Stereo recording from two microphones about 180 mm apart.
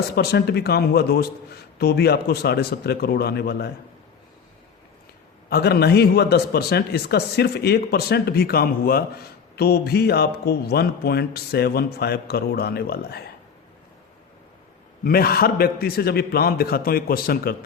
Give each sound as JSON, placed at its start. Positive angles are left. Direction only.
{"t": 0.2, "sound": "speech", "side_deg": 60}
{"t": 5.5, "sound": "speech", "side_deg": 60}
{"t": 15.0, "sound": "speech", "side_deg": 55}